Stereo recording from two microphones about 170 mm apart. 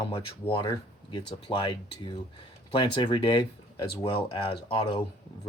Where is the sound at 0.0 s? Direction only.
30° left (ahead or behind).